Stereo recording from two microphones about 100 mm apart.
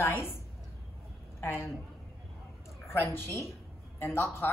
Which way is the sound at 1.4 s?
25° left (ahead or behind).